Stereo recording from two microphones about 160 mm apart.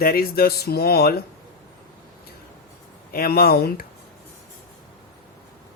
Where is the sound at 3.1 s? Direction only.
70° left (ahead or behind).